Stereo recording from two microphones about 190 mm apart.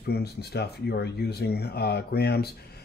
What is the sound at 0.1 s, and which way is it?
Speech, 60° left (ahead or behind).